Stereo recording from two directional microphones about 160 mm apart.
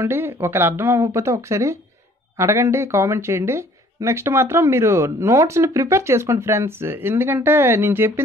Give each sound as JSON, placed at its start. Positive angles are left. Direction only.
{"t": 0.0, "sound": "speech", "side_deg": -15}